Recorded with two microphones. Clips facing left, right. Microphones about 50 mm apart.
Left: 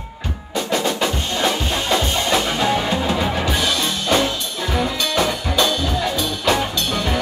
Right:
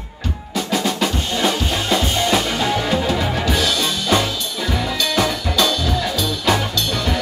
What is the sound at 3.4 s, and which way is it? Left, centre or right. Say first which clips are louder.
Music: right 1 dB; left.